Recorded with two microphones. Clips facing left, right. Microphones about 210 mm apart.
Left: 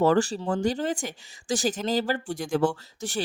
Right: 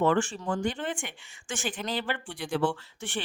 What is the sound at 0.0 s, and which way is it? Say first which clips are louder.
Speech: left 4 dB; 40° left (ahead or behind).